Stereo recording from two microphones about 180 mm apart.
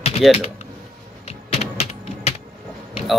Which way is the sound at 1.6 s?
35° left (ahead or behind).